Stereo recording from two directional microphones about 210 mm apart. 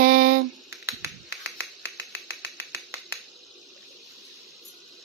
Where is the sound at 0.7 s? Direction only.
15° right (ahead or behind).